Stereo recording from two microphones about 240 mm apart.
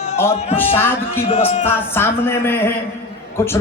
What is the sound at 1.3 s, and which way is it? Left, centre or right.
Speech, left.